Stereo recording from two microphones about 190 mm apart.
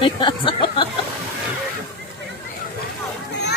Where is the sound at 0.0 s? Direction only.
25° left (ahead or behind).